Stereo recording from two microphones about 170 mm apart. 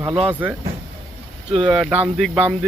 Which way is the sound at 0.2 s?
10° right (ahead or behind).